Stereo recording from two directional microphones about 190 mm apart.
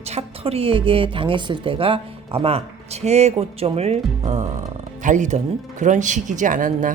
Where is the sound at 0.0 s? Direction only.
35° right (ahead or behind).